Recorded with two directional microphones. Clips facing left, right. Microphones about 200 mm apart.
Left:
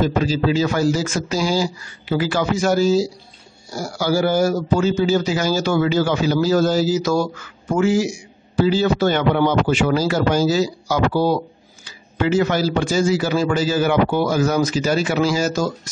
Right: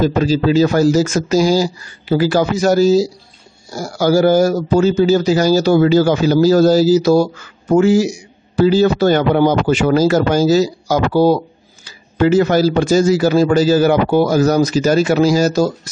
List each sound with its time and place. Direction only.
0.0 s a man's voice: 40° right (ahead or behind)